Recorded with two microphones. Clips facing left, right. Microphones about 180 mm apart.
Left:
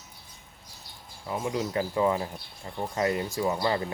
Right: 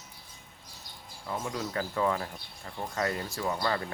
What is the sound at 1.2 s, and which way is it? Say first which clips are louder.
Speech: left 4 dB; 15° left (ahead or behind).